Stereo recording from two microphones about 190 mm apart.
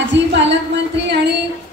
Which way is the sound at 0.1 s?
70° right (ahead or behind).